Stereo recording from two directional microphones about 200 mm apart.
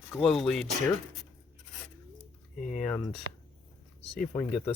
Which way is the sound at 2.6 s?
40° left (ahead or behind).